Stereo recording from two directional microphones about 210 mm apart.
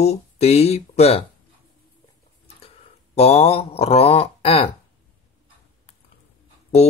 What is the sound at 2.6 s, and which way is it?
Mantra, 30° left (ahead or behind).